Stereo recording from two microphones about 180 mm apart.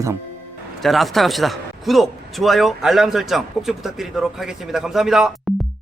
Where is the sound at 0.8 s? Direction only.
Centre (ahead or behind).